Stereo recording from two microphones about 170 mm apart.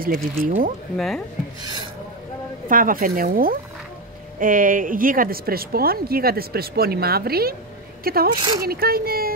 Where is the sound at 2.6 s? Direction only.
55° right (ahead or behind).